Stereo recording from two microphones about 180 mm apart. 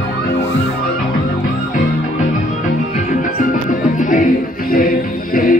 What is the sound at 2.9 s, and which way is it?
Music, 45° left (ahead or behind).